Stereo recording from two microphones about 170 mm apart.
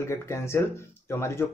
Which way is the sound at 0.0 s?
15° left (ahead or behind).